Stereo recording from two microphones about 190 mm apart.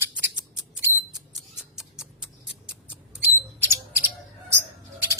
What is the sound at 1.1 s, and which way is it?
Music, 5° right (ahead or behind).